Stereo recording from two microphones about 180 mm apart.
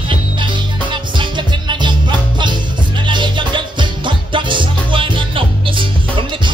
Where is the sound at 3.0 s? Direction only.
25° right (ahead or behind).